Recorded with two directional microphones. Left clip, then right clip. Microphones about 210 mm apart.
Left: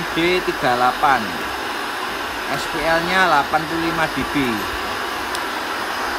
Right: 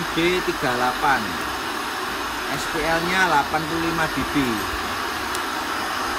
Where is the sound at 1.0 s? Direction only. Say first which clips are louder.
Left 3 dB; 40° left (ahead or behind).